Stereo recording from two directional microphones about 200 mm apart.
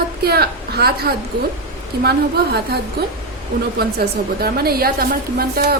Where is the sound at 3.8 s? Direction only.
50° right (ahead or behind).